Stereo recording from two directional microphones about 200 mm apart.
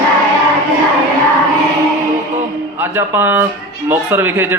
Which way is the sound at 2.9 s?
10° right (ahead or behind).